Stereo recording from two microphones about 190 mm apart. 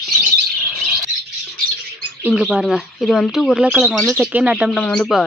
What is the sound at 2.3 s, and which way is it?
Speech, 5° right (ahead or behind).